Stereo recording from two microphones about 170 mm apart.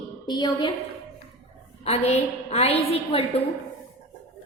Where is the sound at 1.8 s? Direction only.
40° left (ahead or behind).